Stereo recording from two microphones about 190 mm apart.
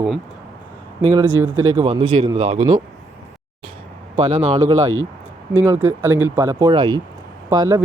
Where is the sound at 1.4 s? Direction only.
10° right (ahead or behind).